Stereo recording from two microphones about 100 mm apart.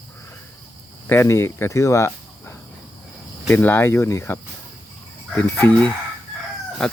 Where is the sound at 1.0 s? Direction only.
20° left (ahead or behind).